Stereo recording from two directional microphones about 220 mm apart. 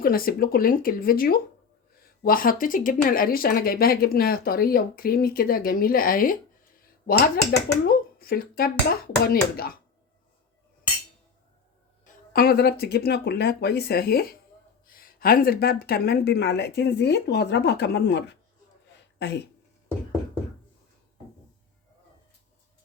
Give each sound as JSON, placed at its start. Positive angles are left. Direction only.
{"t": 0.0, "sound": "speech", "side_deg": 40}
{"t": 12.0, "sound": "speech", "side_deg": 40}